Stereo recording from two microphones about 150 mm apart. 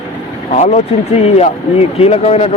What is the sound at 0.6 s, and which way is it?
Speech, 45° left (ahead or behind).